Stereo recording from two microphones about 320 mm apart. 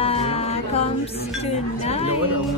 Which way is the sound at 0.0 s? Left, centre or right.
Centre.